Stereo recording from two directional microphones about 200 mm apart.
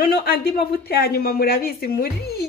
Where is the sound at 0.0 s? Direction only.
50° left (ahead or behind).